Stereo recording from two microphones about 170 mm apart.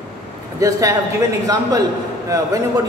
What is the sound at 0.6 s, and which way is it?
Speech, 20° right (ahead or behind).